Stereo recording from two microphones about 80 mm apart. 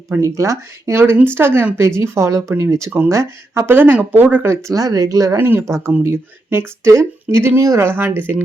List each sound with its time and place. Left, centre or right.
0.2 s speech: right
4.7 s speech: right